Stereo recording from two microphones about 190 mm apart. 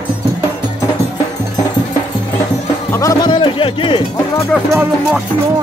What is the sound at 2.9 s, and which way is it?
Music, 20° left (ahead or behind).